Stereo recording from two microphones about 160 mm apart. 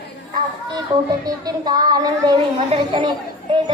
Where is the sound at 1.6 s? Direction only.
25° right (ahead or behind).